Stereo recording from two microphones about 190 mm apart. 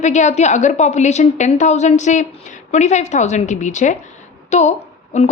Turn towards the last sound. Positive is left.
turn(degrees=35)  # may be behind; listen again after turning